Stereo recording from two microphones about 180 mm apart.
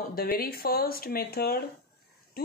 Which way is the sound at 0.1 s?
55° left (ahead or behind).